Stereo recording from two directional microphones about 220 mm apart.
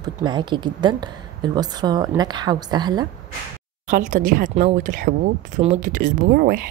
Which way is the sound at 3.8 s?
35° right (ahead or behind).